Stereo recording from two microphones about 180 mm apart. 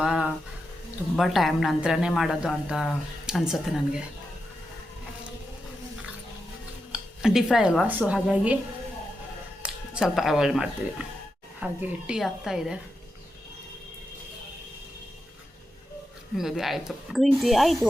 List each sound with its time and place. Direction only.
0.0 s music: 5° right (ahead or behind)
1.1 s a woman's voice: centre (ahead or behind)
6.9 s speech: centre (ahead or behind)
9.6 s a woman's voice: 5° right (ahead or behind)
16.4 s a woman's voice: centre (ahead or behind)